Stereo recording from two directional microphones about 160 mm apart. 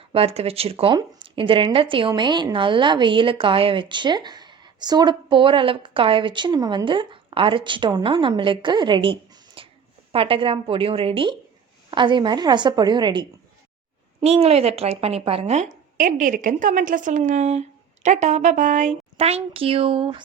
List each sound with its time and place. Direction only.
0.0 s a woman's voice: 35° right (ahead or behind)
14.3 s a woman's voice: 40° right (ahead or behind)